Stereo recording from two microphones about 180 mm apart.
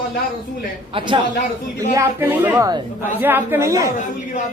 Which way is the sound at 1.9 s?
15° right (ahead or behind).